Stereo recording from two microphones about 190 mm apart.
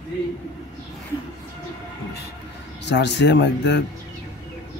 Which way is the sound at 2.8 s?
65° left (ahead or behind).